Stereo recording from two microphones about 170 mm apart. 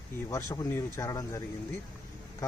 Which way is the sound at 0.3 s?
15° left (ahead or behind).